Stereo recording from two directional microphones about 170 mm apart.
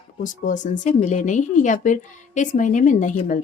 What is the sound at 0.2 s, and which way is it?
Speech, 50° left (ahead or behind).